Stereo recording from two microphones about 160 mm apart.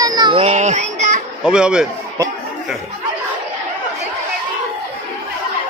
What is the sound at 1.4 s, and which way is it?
Speech, 5° right (ahead or behind).